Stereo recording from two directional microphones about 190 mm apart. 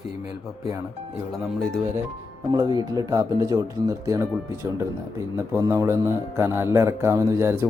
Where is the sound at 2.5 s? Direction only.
20° right (ahead or behind).